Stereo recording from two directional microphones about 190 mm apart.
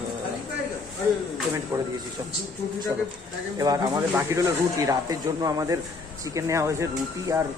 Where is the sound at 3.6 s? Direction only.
20° right (ahead or behind).